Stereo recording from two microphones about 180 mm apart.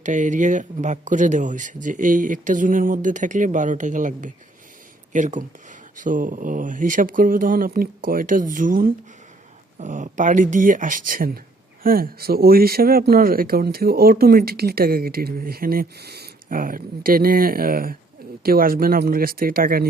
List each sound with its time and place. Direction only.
0.0 s speech: 45° right (ahead or behind)